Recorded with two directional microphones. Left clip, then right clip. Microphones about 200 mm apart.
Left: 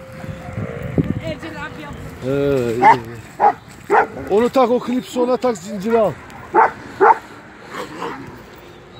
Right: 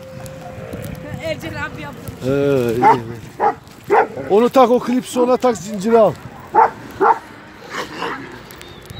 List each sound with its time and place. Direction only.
1.2 s speech: 35° right (ahead or behind)
2.2 s speech: 5° right (ahead or behind)
2.8 s dog: 35° left (ahead or behind)
4.3 s speech: 15° right (ahead or behind)
6.5 s a sound: 30° left (ahead or behind)
7.7 s a sound: 50° left (ahead or behind)